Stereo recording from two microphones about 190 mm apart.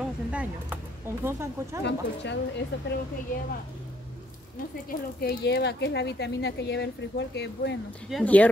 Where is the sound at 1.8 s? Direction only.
65° left (ahead or behind).